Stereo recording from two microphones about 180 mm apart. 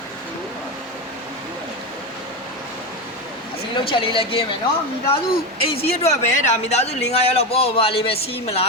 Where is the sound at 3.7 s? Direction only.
25° left (ahead or behind).